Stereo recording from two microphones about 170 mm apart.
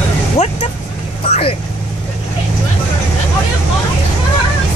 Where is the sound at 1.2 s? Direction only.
35° left (ahead or behind).